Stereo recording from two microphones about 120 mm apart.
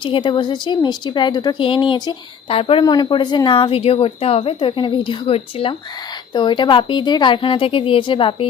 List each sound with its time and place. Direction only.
0.0 s speech: 45° left (ahead or behind)
2.8 s speech: 35° left (ahead or behind)